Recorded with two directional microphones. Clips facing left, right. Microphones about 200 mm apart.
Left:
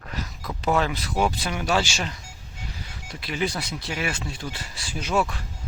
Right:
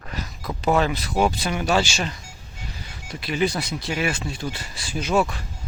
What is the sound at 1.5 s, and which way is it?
Speech, centre (ahead or behind).